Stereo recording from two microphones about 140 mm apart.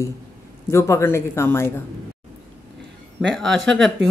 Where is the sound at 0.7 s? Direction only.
20° left (ahead or behind).